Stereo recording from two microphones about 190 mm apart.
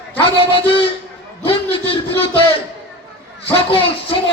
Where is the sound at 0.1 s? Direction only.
30° left (ahead or behind).